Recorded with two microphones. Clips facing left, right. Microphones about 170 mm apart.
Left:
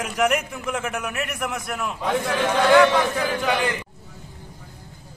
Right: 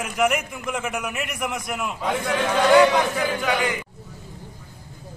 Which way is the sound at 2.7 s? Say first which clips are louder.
Right 1 dB; 15° right (ahead or behind).